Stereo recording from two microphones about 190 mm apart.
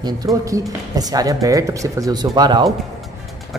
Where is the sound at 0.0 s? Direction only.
20° right (ahead or behind).